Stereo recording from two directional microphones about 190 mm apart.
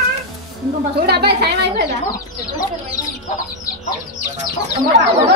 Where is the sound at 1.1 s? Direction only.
60° right (ahead or behind).